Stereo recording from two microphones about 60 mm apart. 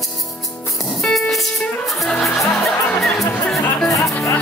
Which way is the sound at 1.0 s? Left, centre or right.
Centre.